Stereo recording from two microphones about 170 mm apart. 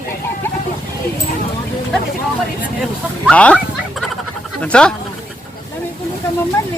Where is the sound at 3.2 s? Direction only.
5° left (ahead or behind).